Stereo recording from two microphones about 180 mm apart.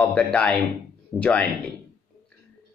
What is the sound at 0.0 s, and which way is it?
Speech, 5° left (ahead or behind).